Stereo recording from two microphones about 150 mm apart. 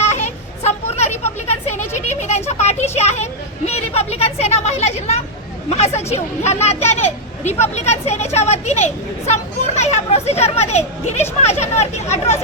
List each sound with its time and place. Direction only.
0.0 s a sound: 50° left (ahead or behind)
3.7 s vehicle: 45° left (ahead or behind)
5.6 s a child's voice: 45° left (ahead or behind)